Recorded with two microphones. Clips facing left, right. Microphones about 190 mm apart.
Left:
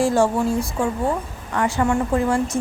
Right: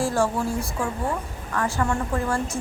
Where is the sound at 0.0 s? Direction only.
20° left (ahead or behind).